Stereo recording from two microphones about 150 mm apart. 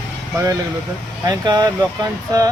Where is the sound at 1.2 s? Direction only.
25° right (ahead or behind).